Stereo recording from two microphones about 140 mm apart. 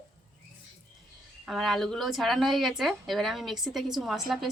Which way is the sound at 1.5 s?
Centre (ahead or behind).